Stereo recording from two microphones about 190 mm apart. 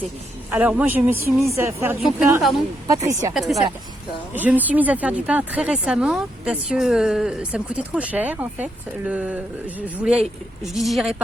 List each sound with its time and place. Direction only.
0.5 s speech: 10° right (ahead or behind)
3.3 s speech: centre (ahead or behind)